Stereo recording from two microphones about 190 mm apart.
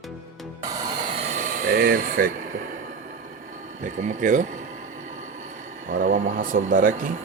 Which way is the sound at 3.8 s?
40° right (ahead or behind).